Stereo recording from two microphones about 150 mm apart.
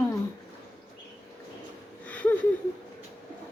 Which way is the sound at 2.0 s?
10° left (ahead or behind).